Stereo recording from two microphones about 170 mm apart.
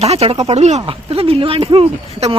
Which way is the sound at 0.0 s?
35° right (ahead or behind).